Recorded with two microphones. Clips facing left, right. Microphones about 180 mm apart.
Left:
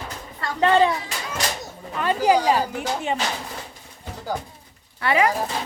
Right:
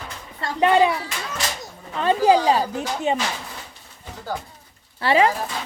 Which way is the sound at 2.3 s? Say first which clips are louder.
Even; 20° right (ahead or behind).